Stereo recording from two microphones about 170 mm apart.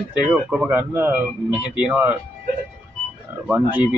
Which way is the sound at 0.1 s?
5° right (ahead or behind).